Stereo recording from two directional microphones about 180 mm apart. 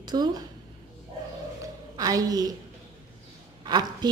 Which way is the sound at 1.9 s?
20° right (ahead or behind).